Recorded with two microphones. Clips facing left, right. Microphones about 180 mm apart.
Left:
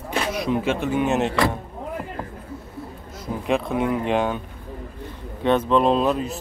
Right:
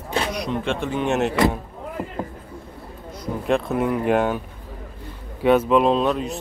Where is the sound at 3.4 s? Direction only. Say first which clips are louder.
Right 1 dB; centre (ahead or behind).